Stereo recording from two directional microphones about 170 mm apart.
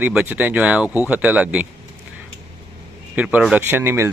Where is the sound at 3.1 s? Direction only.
5° right (ahead or behind).